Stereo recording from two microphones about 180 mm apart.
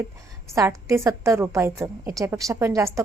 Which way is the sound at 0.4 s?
15° right (ahead or behind).